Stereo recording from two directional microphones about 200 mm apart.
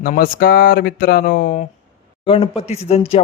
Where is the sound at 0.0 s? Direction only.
45° left (ahead or behind).